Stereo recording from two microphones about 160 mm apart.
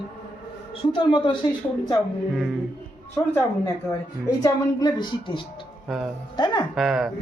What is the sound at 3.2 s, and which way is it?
Speech, 20° left (ahead or behind).